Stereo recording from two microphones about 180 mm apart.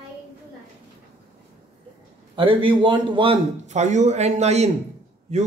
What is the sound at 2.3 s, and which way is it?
A man's voice, 30° right (ahead or behind).